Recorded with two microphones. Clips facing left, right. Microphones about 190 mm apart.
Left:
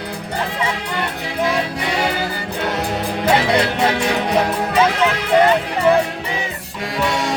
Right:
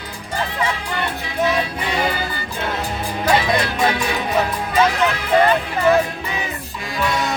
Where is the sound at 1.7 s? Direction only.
75° left (ahead or behind).